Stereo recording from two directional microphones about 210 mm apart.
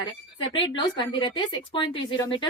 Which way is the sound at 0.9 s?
20° left (ahead or behind).